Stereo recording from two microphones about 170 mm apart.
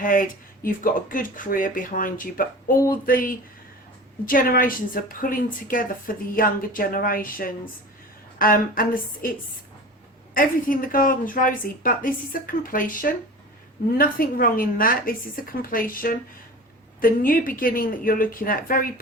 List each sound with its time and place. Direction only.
0.0 s a woman's voice: 50° left (ahead or behind)
10.3 s a woman's voice: 55° left (ahead or behind)